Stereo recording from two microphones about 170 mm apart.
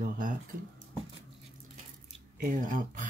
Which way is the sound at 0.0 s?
55° right (ahead or behind).